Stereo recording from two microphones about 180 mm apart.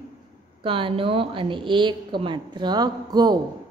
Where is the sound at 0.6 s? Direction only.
30° right (ahead or behind).